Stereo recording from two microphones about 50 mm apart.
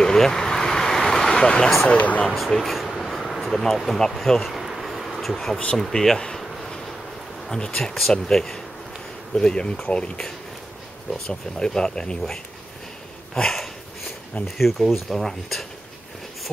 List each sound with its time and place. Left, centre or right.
0.0 s vehicle: centre
1.9 s speech: left
2.3 s a sound: centre
5.8 s speech: centre
7.4 s speech: centre
13.3 s sniff: centre
14.6 s speech: centre